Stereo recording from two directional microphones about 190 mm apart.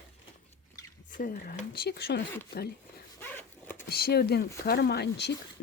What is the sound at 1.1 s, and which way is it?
Speech, 50° left (ahead or behind).